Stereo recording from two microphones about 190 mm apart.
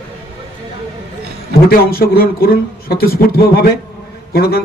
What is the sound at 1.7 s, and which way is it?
A man's voice, 50° left (ahead or behind).